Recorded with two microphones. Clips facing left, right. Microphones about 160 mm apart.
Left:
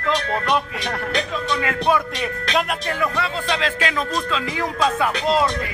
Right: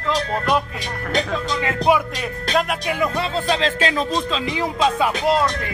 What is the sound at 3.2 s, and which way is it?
Speech, 30° right (ahead or behind).